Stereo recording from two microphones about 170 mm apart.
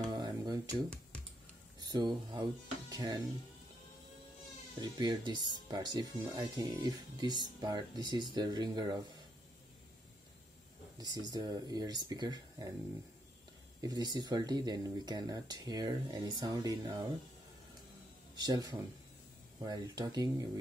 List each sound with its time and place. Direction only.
0.0 s guitar: 25° right (ahead or behind)
1.8 s speech: 25° right (ahead or behind)
4.7 s speech: 25° right (ahead or behind)
11.0 s speech: 25° right (ahead or behind)
13.7 s speech: 20° right (ahead or behind)
18.3 s speech: 25° right (ahead or behind)